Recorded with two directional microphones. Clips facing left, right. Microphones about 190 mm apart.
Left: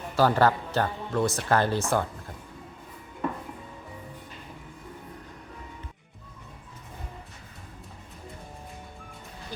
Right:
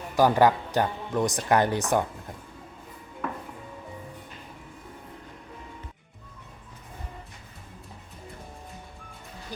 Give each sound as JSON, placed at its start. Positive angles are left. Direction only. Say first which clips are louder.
{"t": 0.2, "sound": "speech", "louder": "right 2 dB", "side_deg": -15}